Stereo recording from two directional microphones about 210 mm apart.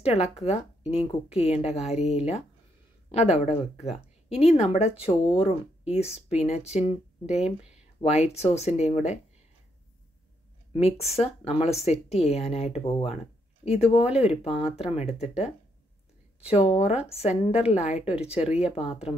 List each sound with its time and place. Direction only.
0.0 s a woman's voice: 30° left (ahead or behind)
8.0 s a woman's voice: 30° left (ahead or behind)
10.7 s a woman's voice: 30° left (ahead or behind)
18.5 s speech: 5° right (ahead or behind)